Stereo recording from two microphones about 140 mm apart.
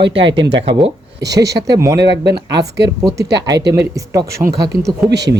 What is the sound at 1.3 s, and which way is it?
Speech, 25° right (ahead or behind).